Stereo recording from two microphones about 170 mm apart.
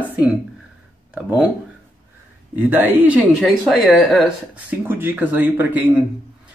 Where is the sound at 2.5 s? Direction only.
10° right (ahead or behind).